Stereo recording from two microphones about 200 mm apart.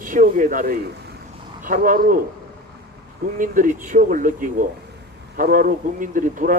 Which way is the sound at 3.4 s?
40° right (ahead or behind).